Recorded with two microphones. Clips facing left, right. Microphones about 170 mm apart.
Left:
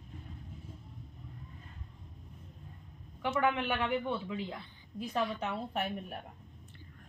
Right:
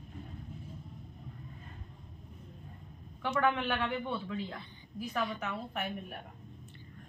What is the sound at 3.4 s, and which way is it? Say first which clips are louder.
A woman's voice: right 1 dB; 15° left (ahead or behind).